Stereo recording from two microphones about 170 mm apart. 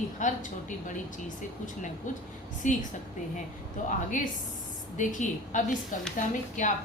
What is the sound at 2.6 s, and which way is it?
Speech, 45° left (ahead or behind).